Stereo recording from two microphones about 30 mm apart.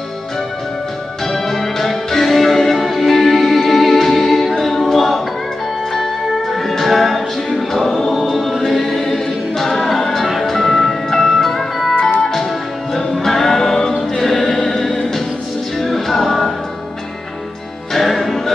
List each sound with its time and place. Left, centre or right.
1.2 s music: centre
6.9 s music: centre
8.1 s choir: centre
10.4 s music: centre
12.2 s music: centre
12.9 s music: centre
17.9 s music: centre